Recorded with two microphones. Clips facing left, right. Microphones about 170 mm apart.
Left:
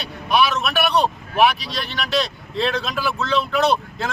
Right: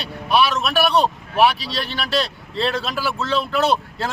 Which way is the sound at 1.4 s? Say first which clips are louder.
Right 1 dB; 30° right (ahead or behind).